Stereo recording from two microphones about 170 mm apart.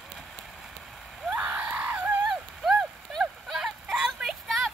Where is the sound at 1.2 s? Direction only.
5° right (ahead or behind).